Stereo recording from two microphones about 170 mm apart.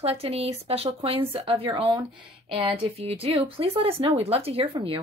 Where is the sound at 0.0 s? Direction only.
35° right (ahead or behind).